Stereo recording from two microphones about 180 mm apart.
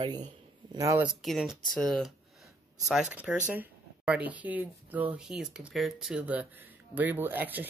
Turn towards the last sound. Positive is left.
turn(degrees=-10)  # may be behind; listen again after turning